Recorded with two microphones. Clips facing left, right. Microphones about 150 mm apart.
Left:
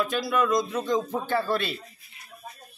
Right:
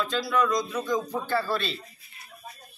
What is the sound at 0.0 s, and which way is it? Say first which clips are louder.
Speech: left 1 dB; 20° left (ahead or behind).